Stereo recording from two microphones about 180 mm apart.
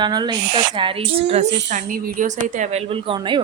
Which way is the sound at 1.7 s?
50° right (ahead or behind).